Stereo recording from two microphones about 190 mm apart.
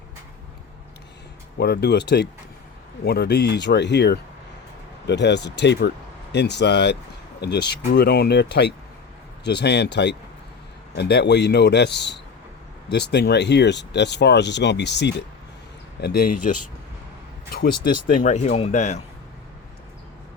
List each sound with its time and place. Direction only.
1.5 s speech: 60° left (ahead or behind)
18.1 s speech: 40° left (ahead or behind)